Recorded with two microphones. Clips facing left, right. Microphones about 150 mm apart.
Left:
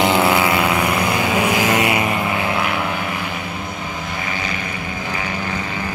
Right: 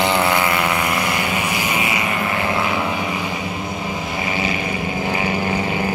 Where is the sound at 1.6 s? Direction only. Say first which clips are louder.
Left 5 dB; 90° left.